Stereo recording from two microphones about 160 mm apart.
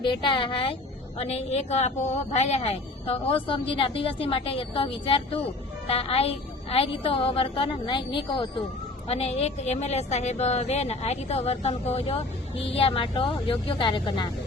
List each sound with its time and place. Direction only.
0.0 s a woman's voice: 30° left (ahead or behind)